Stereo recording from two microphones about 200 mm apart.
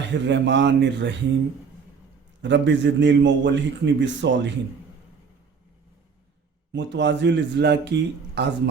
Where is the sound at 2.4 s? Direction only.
65° right (ahead or behind).